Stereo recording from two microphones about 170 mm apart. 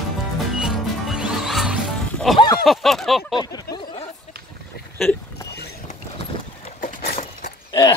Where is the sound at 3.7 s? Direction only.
35° left (ahead or behind).